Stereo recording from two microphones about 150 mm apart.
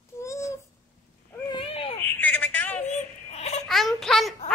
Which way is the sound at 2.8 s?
50° left (ahead or behind).